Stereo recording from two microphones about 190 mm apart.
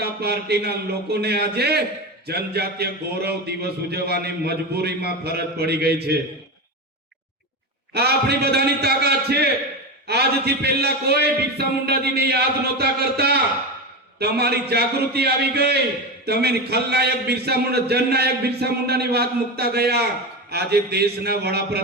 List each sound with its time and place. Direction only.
0.0 s a man's voice: 60° right (ahead or behind)
7.9 s a man's voice: 55° right (ahead or behind)